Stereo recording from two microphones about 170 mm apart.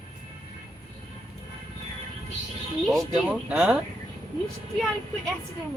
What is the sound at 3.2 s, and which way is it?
Speech, 10° right (ahead or behind).